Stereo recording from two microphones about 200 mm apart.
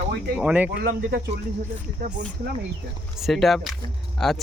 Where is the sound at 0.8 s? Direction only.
45° right (ahead or behind).